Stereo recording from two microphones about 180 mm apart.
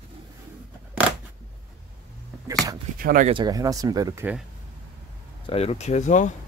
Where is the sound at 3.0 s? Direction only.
50° right (ahead or behind).